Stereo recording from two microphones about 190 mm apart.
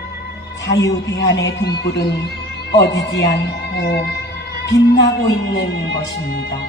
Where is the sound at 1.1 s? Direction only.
70° left (ahead or behind).